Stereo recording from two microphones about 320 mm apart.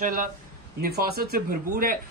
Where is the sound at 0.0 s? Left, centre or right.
Right.